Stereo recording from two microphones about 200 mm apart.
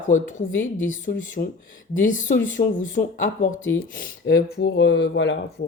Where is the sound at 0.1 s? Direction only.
40° left (ahead or behind).